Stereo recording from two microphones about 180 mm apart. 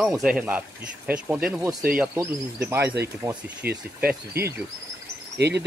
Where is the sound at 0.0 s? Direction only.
Centre (ahead or behind).